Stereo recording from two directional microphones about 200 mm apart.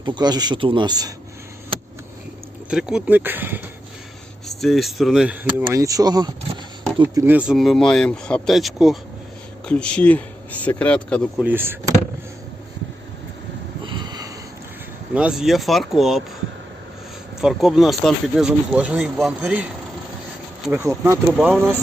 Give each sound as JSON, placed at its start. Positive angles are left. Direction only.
{"t": 0.0, "sound": "speech", "side_deg": -20}
{"t": 2.6, "sound": "speech", "side_deg": -5}
{"t": 11.3, "sound": "speech", "side_deg": -10}
{"t": 13.8, "sound": "snort", "side_deg": -25}
{"t": 15.1, "sound": "speech", "side_deg": -5}
{"t": 17.4, "sound": "speech", "side_deg": 0}
{"t": 20.7, "sound": "speech", "side_deg": -10}